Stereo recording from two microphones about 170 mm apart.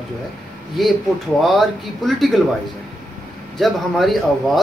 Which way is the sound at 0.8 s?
Centre (ahead or behind).